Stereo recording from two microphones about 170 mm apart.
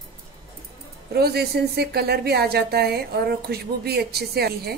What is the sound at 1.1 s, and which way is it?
A woman's voice, 70° right (ahead or behind).